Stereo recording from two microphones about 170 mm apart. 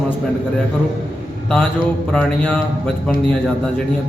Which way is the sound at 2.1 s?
10° left (ahead or behind).